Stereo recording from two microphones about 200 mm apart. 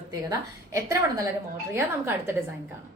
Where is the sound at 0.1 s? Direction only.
15° right (ahead or behind).